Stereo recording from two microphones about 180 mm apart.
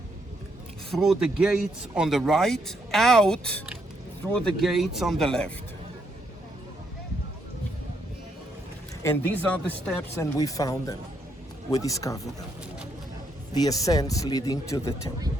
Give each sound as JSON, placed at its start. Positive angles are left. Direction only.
{"t": 0.9, "sound": "speech", "side_deg": 0}
{"t": 9.0, "sound": "speech", "side_deg": 10}
{"t": 13.5, "sound": "speech", "side_deg": 20}